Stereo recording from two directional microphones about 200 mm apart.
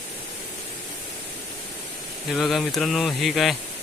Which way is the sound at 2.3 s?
Centre (ahead or behind).